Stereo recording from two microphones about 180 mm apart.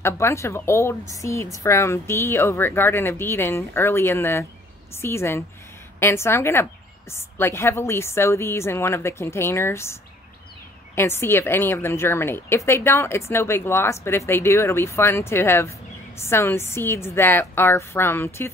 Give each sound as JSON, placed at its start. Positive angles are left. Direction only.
{"t": 0.0, "sound": "a woman's voice", "side_deg": 15}
{"t": 11.0, "sound": "a woman's voice", "side_deg": 15}